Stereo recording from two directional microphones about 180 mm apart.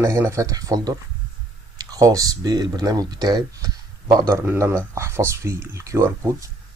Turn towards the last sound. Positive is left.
turn(degrees=-15)  # may be behind; listen again after turning